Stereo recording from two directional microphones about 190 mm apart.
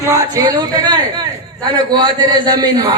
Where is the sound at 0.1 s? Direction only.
20° right (ahead or behind).